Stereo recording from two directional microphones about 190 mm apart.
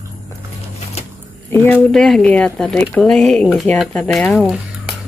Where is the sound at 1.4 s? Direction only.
10° left (ahead or behind).